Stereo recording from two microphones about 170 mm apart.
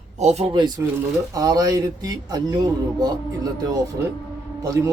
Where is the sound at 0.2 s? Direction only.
40° right (ahead or behind).